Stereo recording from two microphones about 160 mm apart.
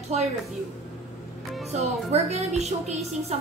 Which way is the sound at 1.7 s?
40° right (ahead or behind).